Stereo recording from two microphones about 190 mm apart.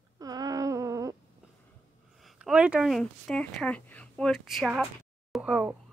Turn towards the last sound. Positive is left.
turn(degrees=-5)  # may be behind; listen again after turning